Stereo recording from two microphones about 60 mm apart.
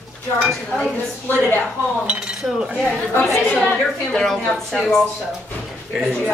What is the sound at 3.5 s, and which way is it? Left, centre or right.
A woman's voice, centre.